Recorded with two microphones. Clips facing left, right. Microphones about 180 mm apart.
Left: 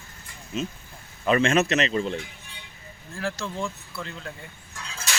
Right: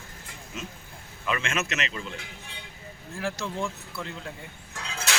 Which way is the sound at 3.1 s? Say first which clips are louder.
Left 1 dB; 20° right (ahead or behind).